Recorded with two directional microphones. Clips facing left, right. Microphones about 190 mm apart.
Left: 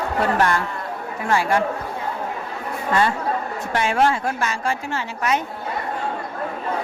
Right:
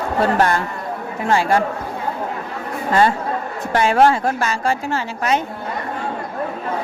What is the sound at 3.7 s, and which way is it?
A woman's voice, 35° right (ahead or behind).